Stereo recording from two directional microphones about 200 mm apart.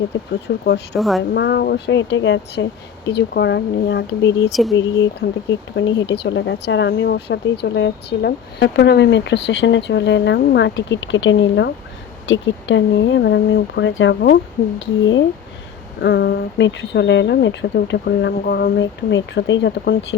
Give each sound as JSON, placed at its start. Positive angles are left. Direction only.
{"t": 0.4, "sound": "speech", "side_deg": 55}
{"t": 0.9, "sound": "speech", "side_deg": 0}
{"t": 1.3, "sound": "speech", "side_deg": 55}
{"t": 3.1, "sound": "speech", "side_deg": 55}
{"t": 4.6, "sound": "speech", "side_deg": 0}
{"t": 5.5, "sound": "speech", "side_deg": 70}
{"t": 16.0, "sound": "speech", "side_deg": 55}